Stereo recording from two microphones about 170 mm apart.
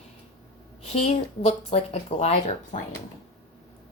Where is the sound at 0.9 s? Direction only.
40° left (ahead or behind).